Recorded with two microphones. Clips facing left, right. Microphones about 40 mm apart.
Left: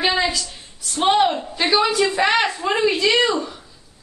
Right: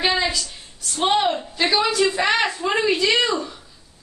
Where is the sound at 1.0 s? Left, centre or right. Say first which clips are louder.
Left 3 dB; centre.